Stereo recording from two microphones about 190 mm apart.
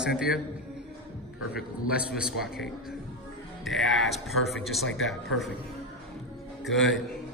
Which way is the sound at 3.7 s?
Centre (ahead or behind).